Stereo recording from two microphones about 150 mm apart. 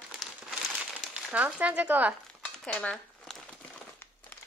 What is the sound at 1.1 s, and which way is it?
Speech, 10° right (ahead or behind).